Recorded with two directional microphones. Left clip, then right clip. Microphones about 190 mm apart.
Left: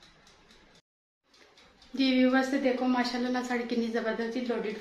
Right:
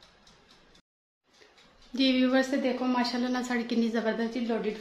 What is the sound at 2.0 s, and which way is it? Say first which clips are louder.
A woman's voice: even; 40° right (ahead or behind).